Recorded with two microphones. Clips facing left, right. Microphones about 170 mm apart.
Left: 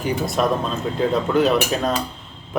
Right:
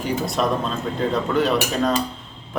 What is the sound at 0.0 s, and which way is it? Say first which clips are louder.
A man's voice: left 1 dB; centre (ahead or behind).